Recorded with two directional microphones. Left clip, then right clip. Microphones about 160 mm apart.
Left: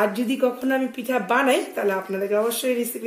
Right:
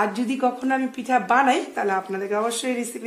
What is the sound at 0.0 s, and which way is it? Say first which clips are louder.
A woman's voice: left 1 dB; 20° right (ahead or behind).